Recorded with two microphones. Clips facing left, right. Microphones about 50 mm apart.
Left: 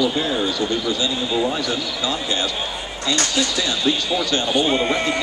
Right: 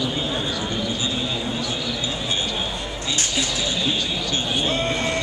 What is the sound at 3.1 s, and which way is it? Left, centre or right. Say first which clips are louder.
Speech: left 5 dB; left.